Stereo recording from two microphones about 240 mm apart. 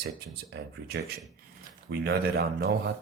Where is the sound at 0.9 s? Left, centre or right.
Right.